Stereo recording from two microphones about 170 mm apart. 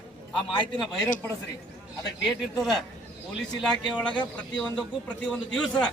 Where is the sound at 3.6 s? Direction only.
5° left (ahead or behind).